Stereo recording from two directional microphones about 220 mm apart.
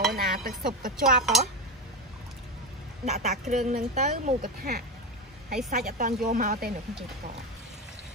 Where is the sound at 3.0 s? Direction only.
30° right (ahead or behind).